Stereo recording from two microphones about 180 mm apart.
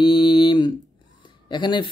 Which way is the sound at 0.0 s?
25° left (ahead or behind).